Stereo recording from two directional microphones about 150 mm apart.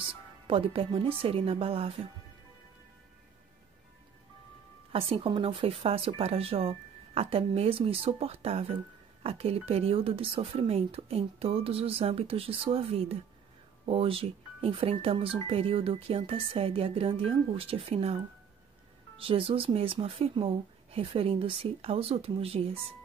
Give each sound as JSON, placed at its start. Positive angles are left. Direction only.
{"t": 0.5, "sound": "speech", "side_deg": -40}
{"t": 4.9, "sound": "speech", "side_deg": -40}